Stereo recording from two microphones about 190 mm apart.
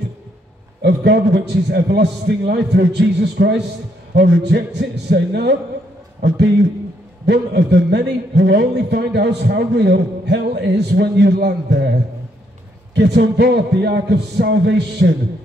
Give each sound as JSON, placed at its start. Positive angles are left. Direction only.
{"t": 0.8, "sound": "a man's voice", "side_deg": -65}